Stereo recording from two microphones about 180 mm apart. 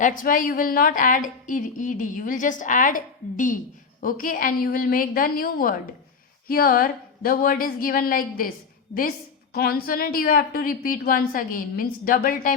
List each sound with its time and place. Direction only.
0.0 s a woman's voice: 50° left (ahead or behind)